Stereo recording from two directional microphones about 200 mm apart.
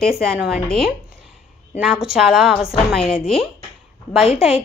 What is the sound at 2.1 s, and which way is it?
Speech, centre (ahead or behind).